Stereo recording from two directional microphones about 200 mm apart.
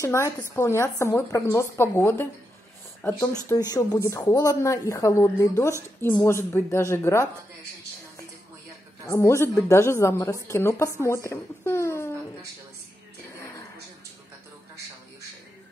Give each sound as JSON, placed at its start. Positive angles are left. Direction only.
{"t": 0.0, "sound": "a woman's voice", "side_deg": 15}
{"t": 9.0, "sound": "a woman's voice", "side_deg": 15}
{"t": 13.4, "sound": "a sound", "side_deg": 15}